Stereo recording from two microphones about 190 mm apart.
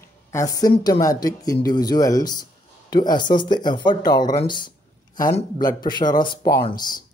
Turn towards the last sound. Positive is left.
turn(degrees=20)  # may be behind; listen again after turning